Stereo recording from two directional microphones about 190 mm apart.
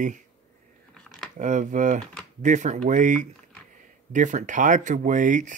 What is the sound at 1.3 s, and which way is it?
Speech, 40° right (ahead or behind).